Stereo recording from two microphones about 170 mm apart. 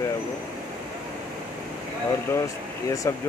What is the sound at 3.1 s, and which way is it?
Speech, 15° left (ahead or behind).